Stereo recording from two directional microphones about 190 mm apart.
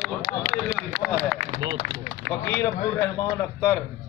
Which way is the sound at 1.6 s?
30° right (ahead or behind).